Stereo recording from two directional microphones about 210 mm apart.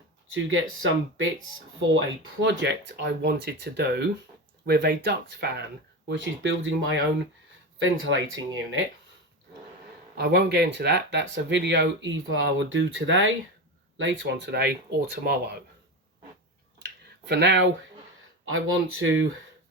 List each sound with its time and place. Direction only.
0.3 s speech: 70° right (ahead or behind)
2.4 s speech: 60° right (ahead or behind)
6.1 s speech: 60° right (ahead or behind)
10.2 s speech: 50° right (ahead or behind)
16.8 s a sound: 55° right (ahead or behind)
18.4 s speech: 75° right (ahead or behind)